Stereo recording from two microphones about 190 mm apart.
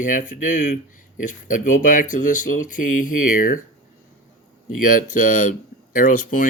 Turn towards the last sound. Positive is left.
turn(degrees=45)  # may be behind; listen again after turning